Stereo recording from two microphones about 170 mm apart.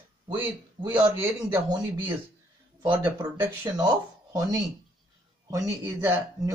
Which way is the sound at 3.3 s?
20° right (ahead or behind).